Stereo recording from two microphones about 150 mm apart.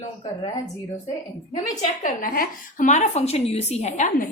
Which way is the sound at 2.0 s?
70° left (ahead or behind).